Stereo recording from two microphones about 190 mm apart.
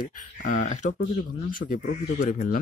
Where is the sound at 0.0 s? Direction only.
45° left (ahead or behind).